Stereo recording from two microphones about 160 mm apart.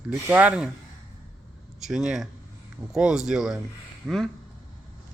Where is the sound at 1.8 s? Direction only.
Centre (ahead or behind).